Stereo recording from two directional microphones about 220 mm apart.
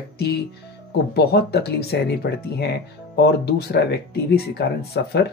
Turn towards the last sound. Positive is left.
turn(degrees=50)  # may be behind; listen again after turning